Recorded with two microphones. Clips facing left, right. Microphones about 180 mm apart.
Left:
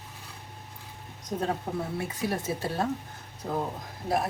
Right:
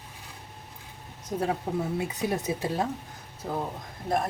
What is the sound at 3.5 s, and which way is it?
Speech, centre (ahead or behind).